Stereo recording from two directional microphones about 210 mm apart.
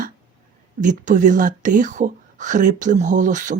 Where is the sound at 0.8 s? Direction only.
35° right (ahead or behind).